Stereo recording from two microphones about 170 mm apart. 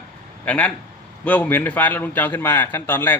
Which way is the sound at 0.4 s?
10° left (ahead or behind).